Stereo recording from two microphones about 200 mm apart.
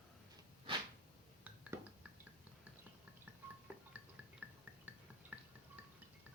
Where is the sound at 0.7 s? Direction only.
25° right (ahead or behind).